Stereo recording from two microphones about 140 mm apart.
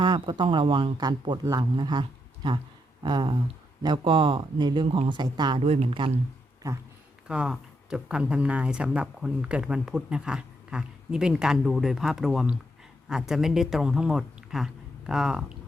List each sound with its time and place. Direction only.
0.0 s speech: 35° right (ahead or behind)
5.5 s speech: 45° right (ahead or behind)
6.6 s speech: 20° right (ahead or behind)
7.3 s speech: 5° right (ahead or behind)